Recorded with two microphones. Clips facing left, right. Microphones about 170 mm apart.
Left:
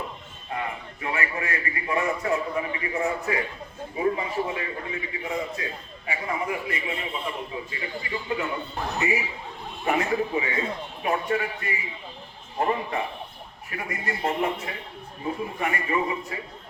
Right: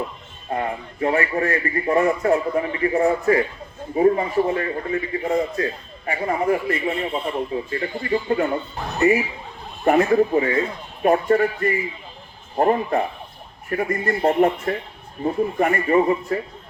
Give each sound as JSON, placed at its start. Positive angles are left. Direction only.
{"t": 0.5, "sound": "a man's voice", "side_deg": -40}
{"t": 9.8, "sound": "speech", "side_deg": -50}